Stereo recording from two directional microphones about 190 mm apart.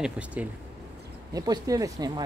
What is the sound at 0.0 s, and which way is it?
Speech, 5° right (ahead or behind).